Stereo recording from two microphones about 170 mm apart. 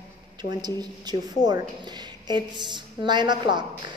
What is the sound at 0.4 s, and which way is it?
A woman's voice, 25° right (ahead or behind).